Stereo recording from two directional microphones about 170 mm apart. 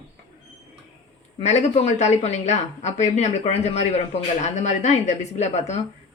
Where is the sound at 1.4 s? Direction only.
40° left (ahead or behind).